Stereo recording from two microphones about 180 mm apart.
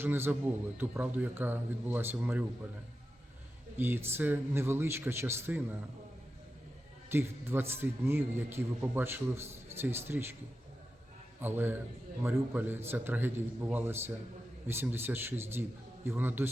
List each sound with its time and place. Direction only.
0.0 s a man's voice: 10° right (ahead or behind)
3.8 s a man's voice: 10° right (ahead or behind)
7.1 s a man's voice: 15° right (ahead or behind)
11.3 s a man's voice: 10° right (ahead or behind)